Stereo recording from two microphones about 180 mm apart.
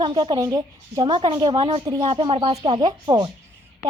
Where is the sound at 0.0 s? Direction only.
25° right (ahead or behind).